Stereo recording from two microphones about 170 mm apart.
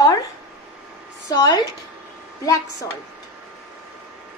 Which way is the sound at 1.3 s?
20° left (ahead or behind).